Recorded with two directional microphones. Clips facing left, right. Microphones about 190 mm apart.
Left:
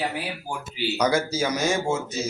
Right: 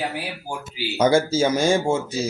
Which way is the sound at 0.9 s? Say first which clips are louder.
Right 6 dB; 25° right (ahead or behind).